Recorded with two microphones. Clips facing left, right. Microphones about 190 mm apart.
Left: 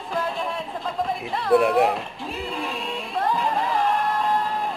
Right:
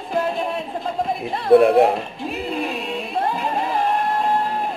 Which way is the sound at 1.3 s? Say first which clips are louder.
Right 6 dB; 30° right (ahead or behind).